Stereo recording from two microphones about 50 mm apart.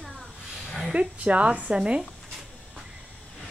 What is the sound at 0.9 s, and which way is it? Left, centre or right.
Speech, right.